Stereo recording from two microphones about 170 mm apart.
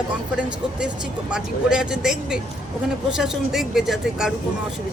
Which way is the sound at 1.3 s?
5° right (ahead or behind).